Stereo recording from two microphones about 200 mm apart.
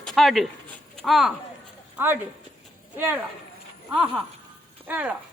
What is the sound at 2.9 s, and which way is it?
Speech, 10° right (ahead or behind).